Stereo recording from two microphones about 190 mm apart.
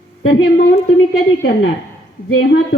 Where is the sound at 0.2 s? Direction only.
90° left.